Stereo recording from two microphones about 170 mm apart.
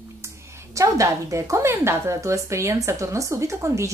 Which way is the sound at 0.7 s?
20° right (ahead or behind).